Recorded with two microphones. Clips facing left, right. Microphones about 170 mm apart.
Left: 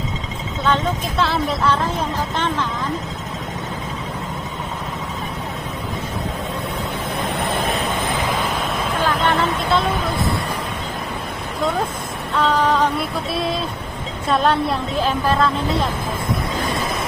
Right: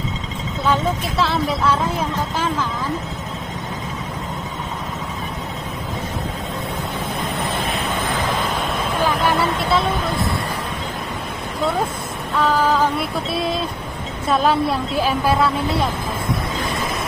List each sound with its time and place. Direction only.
0.7 s speech: centre (ahead or behind)
9.1 s vehicle: 5° right (ahead or behind)
12.4 s a woman's voice: centre (ahead or behind)